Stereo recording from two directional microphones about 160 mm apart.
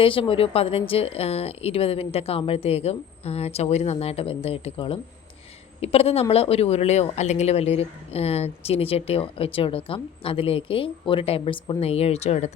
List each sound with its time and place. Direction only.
0.0 s speech: 35° left (ahead or behind)